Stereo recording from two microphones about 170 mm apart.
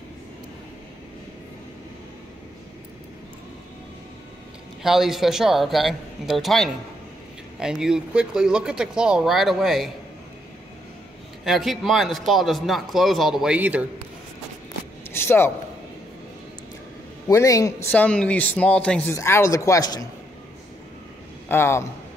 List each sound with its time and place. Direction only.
4.8 s a man's voice: centre (ahead or behind)
11.4 s a man's voice: centre (ahead or behind)
15.1 s a sound: 15° left (ahead or behind)
17.3 s speech: 20° left (ahead or behind)
17.9 s speech: 5° left (ahead or behind)
21.5 s speech: 15° left (ahead or behind)